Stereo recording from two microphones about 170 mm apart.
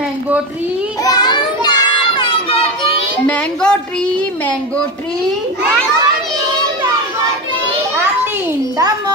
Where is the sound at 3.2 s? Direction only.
5° left (ahead or behind).